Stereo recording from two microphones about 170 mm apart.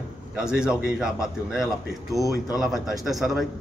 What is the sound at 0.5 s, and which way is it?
A man's voice, 5° right (ahead or behind).